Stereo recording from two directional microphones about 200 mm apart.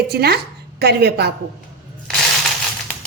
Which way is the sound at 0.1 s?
55° right (ahead or behind).